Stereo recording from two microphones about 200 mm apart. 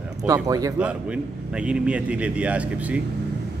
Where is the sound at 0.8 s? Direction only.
5° right (ahead or behind).